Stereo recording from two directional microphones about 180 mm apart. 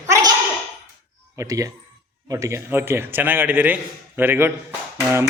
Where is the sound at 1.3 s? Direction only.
20° right (ahead or behind).